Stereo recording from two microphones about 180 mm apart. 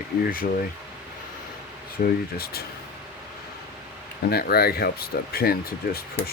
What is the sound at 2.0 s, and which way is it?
Speech, 55° left (ahead or behind).